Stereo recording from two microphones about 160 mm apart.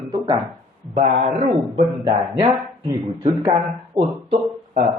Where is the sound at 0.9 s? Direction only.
45° right (ahead or behind).